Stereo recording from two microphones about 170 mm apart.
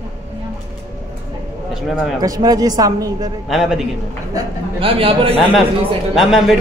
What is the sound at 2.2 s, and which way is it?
Speech, 20° right (ahead or behind).